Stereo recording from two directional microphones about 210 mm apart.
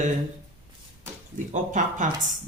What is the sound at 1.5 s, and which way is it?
Speech, 35° right (ahead or behind).